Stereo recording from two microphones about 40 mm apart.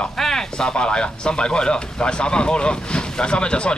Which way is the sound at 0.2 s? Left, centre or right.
Centre.